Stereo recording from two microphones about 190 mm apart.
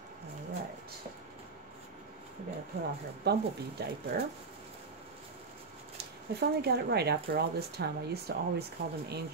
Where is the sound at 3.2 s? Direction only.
60° right (ahead or behind).